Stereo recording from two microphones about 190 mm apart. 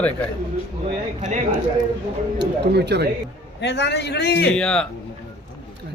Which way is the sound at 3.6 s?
65° left (ahead or behind).